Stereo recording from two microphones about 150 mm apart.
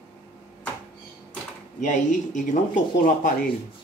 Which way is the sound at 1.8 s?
55° left (ahead or behind).